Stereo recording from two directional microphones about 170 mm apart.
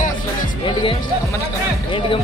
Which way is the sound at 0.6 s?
30° left (ahead or behind).